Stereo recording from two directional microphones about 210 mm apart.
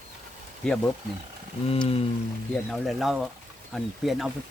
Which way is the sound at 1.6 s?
25° left (ahead or behind).